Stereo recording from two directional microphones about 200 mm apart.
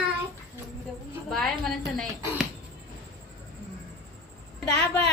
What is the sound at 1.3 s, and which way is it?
Speech, centre (ahead or behind).